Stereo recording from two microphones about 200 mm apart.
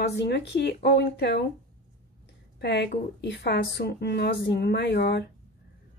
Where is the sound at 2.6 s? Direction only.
55° left (ahead or behind).